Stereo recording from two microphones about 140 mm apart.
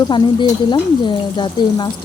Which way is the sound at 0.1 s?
35° left (ahead or behind).